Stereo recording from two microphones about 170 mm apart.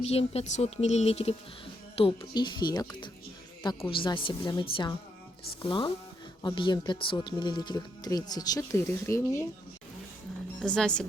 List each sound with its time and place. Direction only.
0.0 s speech: 35° left (ahead or behind); by 9.5 s 15° left (ahead or behind)
10.6 s a woman's voice: 5° left (ahead or behind)